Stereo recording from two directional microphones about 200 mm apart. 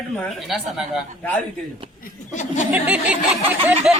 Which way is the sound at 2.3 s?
35° left (ahead or behind).